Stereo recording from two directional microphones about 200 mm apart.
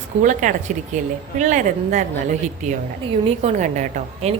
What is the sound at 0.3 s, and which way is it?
A woman's voice, 40° right (ahead or behind).